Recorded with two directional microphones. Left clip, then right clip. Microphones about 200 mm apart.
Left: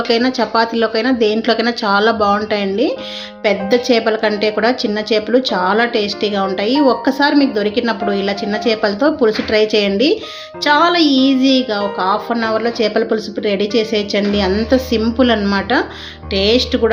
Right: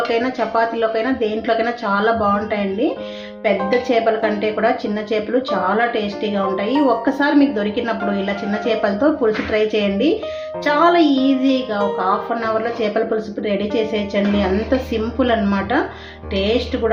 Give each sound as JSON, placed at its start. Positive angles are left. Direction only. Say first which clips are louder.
{"t": 0.1, "sound": "a woman's voice", "louder": "left 4 dB", "side_deg": 40}